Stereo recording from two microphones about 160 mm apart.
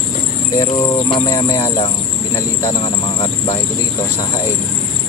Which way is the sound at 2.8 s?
35° left (ahead or behind).